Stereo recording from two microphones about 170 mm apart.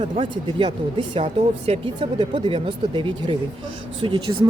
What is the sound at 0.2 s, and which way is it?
Speech, 30° right (ahead or behind).